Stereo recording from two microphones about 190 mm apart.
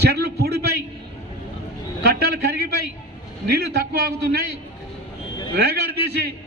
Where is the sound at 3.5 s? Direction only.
55° right (ahead or behind).